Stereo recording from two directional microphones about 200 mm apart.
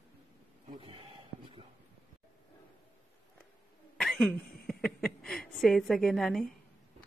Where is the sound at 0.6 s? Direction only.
25° right (ahead or behind).